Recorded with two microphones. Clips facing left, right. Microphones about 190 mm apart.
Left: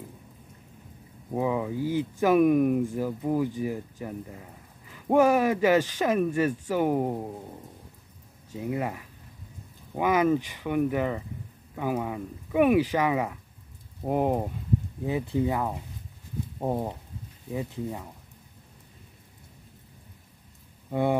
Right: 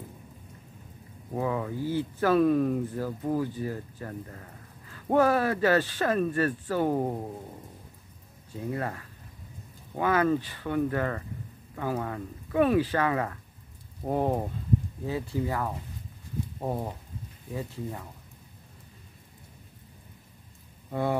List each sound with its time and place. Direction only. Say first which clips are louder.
1.3 s speech: left 3 dB; 15° left (ahead or behind)
8.5 s speech: left 2 dB; 15° left (ahead or behind)
20.9 s speech: left 3 dB; 20° left (ahead or behind)